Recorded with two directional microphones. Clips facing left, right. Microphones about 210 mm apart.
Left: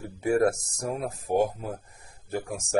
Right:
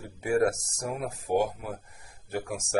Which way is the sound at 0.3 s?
35° left (ahead or behind).